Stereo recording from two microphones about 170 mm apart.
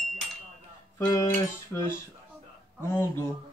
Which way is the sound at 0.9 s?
20° left (ahead or behind).